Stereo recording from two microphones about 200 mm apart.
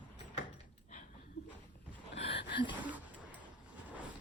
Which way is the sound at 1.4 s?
55° left (ahead or behind).